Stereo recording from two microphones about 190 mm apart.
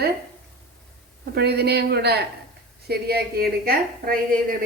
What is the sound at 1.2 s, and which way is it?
A man's voice, 60° right (ahead or behind).